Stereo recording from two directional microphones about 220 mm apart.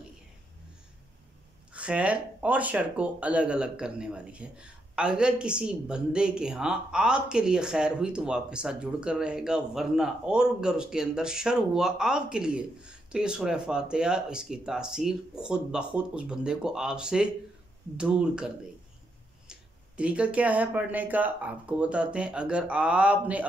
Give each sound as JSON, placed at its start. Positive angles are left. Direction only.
{"t": 1.7, "sound": "speech", "side_deg": -5}